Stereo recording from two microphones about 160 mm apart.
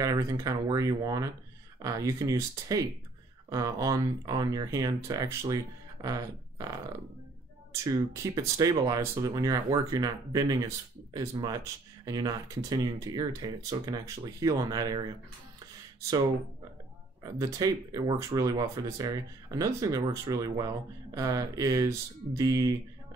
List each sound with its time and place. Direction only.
0.0 s speech: 20° right (ahead or behind)
6.0 s a sound: 25° right (ahead or behind)
7.7 s speech: 20° right (ahead or behind)
17.2 s speech: 20° right (ahead or behind)